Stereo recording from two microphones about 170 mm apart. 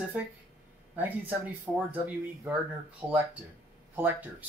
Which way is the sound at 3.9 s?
10° right (ahead or behind).